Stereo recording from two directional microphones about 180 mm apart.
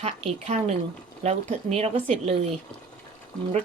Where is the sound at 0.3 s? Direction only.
40° right (ahead or behind).